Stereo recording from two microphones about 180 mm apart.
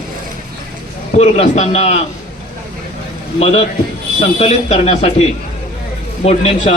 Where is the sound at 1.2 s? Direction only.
40° left (ahead or behind).